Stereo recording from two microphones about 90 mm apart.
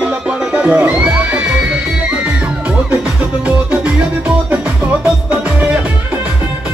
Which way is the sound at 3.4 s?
15° right (ahead or behind).